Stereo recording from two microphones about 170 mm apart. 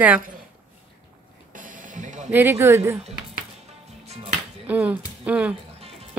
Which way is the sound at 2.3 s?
15° right (ahead or behind).